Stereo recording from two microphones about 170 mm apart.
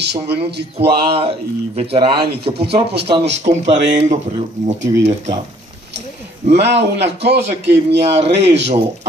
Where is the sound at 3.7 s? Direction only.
90° right.